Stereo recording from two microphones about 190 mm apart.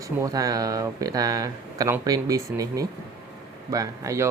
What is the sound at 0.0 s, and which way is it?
Speech, 15° right (ahead or behind).